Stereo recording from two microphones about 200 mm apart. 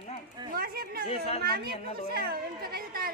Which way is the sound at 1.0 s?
30° left (ahead or behind).